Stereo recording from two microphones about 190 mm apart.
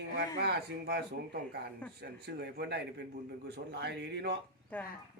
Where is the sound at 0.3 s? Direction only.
60° right (ahead or behind).